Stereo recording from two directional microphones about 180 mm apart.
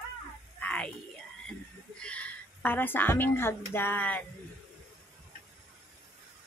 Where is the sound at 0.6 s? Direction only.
5° left (ahead or behind).